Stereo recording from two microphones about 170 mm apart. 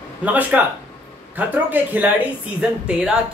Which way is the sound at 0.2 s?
10° right (ahead or behind).